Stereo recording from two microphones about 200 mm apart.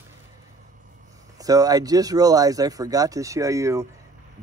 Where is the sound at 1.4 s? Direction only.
20° right (ahead or behind).